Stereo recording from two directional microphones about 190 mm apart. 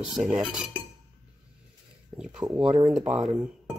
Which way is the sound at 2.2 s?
5° right (ahead or behind).